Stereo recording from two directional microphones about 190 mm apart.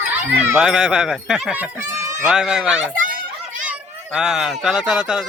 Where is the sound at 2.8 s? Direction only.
45° right (ahead or behind).